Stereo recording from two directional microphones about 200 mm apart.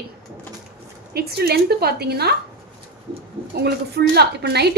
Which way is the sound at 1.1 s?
50° right (ahead or behind).